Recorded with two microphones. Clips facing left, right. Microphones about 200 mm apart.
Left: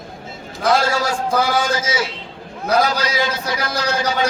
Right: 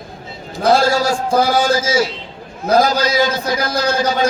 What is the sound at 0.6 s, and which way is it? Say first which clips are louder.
A man's voice: right 4 dB; 35° right (ahead or behind).